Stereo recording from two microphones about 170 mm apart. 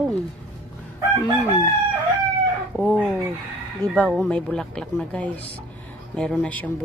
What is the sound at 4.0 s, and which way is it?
Speech, 5° left (ahead or behind).